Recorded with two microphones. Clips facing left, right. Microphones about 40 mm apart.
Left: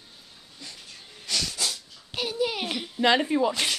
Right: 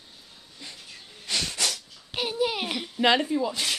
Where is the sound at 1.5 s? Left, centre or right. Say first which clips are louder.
Right 2 dB; right.